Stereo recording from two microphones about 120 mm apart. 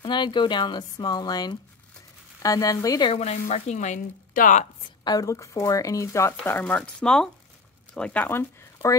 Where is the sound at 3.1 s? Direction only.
65° left (ahead or behind).